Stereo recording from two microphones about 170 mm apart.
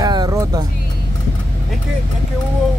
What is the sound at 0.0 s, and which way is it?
Music, 25° right (ahead or behind).